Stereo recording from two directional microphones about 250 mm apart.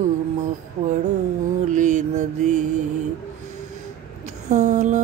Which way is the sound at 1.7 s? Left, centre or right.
Right.